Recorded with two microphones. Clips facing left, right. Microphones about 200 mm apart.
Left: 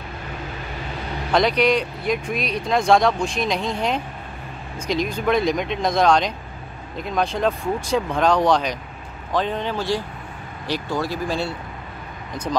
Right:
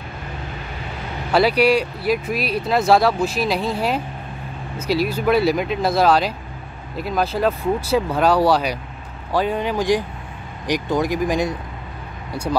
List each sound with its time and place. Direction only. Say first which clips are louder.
1.3 s speech: right 2 dB; 10° right (ahead or behind)